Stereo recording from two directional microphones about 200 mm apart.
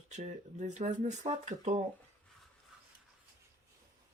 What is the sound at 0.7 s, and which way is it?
Speech, 35° right (ahead or behind).